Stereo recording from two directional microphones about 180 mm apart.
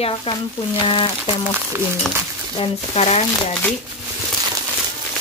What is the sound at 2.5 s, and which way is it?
Speech, 35° left (ahead or behind).